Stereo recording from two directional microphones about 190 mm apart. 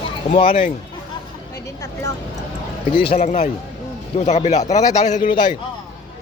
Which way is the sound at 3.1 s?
35° left (ahead or behind).